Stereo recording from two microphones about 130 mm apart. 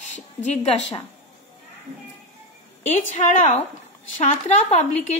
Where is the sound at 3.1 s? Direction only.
75° left (ahead or behind).